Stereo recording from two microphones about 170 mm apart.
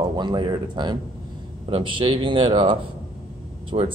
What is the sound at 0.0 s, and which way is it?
A man's voice, 25° right (ahead or behind).